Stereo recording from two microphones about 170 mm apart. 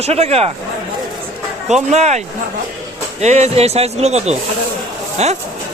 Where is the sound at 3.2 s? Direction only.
40° right (ahead or behind).